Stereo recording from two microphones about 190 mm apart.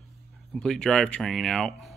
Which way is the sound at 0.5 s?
5° left (ahead or behind).